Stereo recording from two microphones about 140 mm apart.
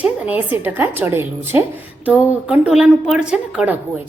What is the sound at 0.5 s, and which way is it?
A woman's voice, 15° right (ahead or behind).